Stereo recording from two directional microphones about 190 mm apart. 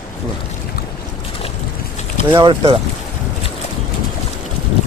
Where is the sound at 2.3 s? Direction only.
25° right (ahead or behind).